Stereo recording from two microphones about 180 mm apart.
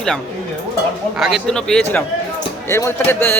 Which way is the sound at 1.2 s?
Centre (ahead or behind).